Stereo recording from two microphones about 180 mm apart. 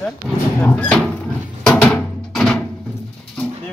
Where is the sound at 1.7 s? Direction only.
10° left (ahead or behind).